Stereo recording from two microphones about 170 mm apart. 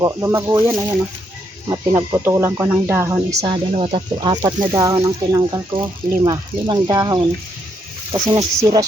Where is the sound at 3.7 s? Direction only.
30° right (ahead or behind).